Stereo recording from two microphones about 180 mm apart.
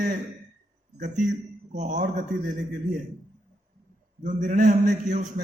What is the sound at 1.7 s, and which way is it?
Speech, 45° right (ahead or behind).